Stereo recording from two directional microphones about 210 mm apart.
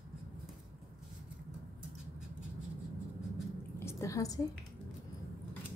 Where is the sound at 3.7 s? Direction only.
10° left (ahead or behind).